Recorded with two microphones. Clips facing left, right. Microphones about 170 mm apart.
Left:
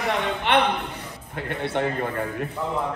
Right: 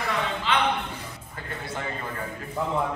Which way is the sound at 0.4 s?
65° left (ahead or behind).